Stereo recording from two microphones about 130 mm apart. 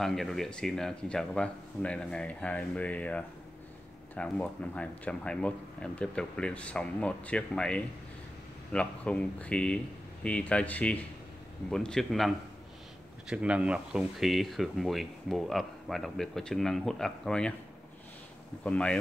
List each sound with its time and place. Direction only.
0.0 s speech: 5° left (ahead or behind)
18.6 s speech: 10° left (ahead or behind)